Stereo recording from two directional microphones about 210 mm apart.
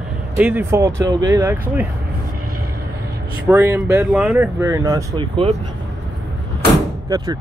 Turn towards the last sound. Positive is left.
turn(degrees=-15)  # may be behind; listen again after turning